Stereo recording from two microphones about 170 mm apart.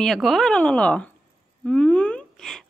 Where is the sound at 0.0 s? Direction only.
Centre (ahead or behind).